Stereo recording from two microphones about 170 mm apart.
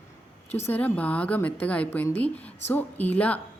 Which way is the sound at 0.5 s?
10° left (ahead or behind).